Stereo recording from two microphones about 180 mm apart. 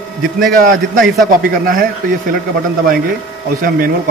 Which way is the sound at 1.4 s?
55° right (ahead or behind).